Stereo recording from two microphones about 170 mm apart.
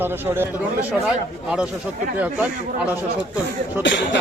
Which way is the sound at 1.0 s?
5° right (ahead or behind).